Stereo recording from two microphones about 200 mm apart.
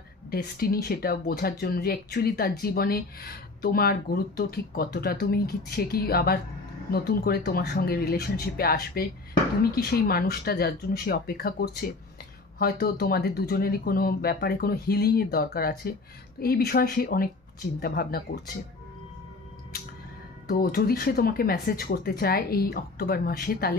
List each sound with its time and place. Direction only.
0.3 s speech: 50° left (ahead or behind)
20.4 s speech: 45° left (ahead or behind)